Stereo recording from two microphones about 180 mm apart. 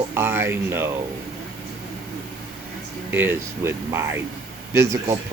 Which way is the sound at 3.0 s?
10° right (ahead or behind).